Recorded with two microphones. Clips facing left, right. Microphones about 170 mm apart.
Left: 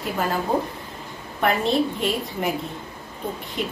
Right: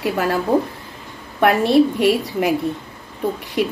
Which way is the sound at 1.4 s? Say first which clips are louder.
Right 7 dB; 75° right (ahead or behind).